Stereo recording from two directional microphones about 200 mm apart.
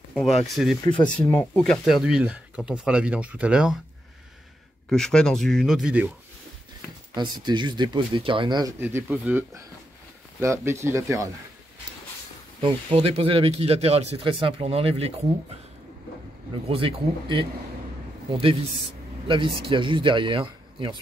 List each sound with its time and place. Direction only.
0.8 s speech: 25° left (ahead or behind)
1.4 s speech: 5° left (ahead or behind)
4.8 s speech: 5° left (ahead or behind)
7.2 s speech: 20° right (ahead or behind)
8.7 s speech: 10° right (ahead or behind)
12.5 s speech: 25° right (ahead or behind)
16.6 s speech: 30° right (ahead or behind)